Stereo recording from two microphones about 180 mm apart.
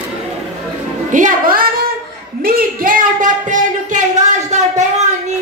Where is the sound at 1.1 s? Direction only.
50° right (ahead or behind).